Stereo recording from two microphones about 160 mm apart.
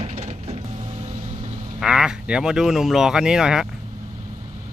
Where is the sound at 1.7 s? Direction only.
5° right (ahead or behind).